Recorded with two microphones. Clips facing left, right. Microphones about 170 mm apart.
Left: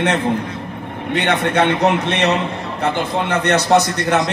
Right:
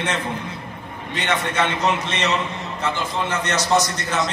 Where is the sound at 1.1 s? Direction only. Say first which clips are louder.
Left 6 dB; 60° left (ahead or behind).